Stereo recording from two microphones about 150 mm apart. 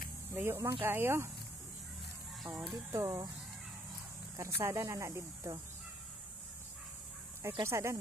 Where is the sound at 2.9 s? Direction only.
20° right (ahead or behind).